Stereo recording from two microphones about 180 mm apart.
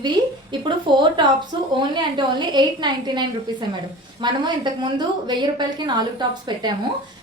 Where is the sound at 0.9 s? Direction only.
25° right (ahead or behind).